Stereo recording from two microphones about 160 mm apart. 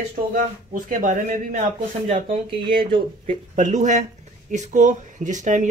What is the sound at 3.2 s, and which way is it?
Speech, 50° right (ahead or behind).